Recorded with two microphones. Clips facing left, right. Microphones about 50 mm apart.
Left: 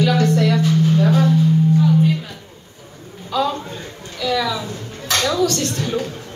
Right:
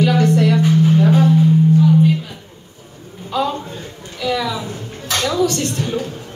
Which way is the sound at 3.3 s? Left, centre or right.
Right.